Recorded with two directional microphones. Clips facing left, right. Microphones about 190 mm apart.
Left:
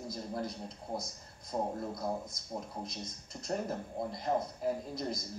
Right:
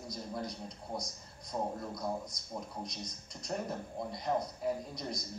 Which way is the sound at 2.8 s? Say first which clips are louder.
Left 1 dB; 5° left (ahead or behind).